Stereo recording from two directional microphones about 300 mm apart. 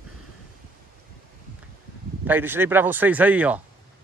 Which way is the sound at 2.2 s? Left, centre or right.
Centre.